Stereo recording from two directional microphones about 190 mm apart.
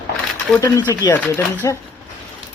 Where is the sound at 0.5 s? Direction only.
15° left (ahead or behind).